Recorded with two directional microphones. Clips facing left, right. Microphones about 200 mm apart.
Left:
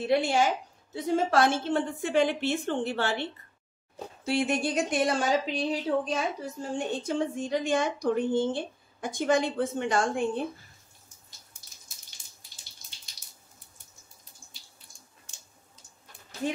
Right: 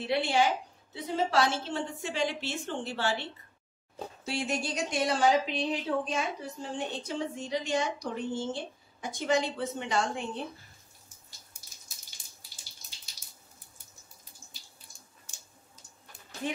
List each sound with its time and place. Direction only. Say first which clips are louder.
0.0 s a woman's voice: left 3 dB; 45° left (ahead or behind)
4.3 s speech: left 6 dB; 55° left (ahead or behind)